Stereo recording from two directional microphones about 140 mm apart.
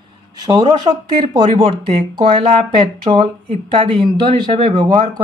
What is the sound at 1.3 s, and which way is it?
Speech, 40° right (ahead or behind).